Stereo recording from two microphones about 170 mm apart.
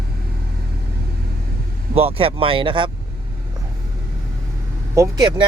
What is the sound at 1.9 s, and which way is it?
Speech, 35° right (ahead or behind).